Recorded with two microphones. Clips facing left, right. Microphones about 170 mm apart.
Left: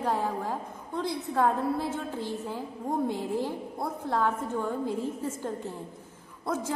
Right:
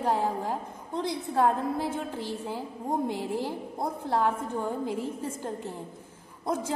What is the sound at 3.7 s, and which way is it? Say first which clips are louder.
A woman's voice: right 2 dB; 15° right (ahead or behind).